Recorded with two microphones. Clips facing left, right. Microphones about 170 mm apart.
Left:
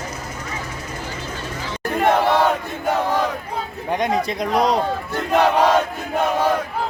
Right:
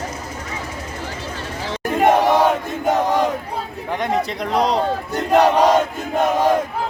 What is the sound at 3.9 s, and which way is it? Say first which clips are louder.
Speech: left 1 dB; 15° left (ahead or behind).